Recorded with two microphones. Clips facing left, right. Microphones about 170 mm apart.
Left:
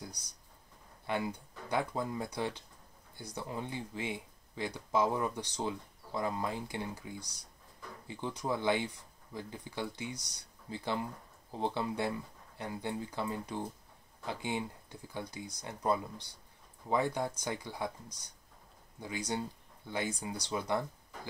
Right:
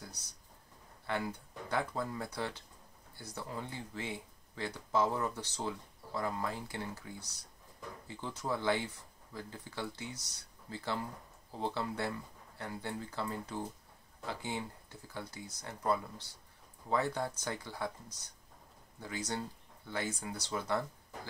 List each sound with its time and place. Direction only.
1.0 s speech: 15° left (ahead or behind)
18.9 s speech: 15° left (ahead or behind)